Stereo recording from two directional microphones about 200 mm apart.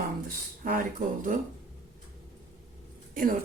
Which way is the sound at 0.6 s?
45° right (ahead or behind).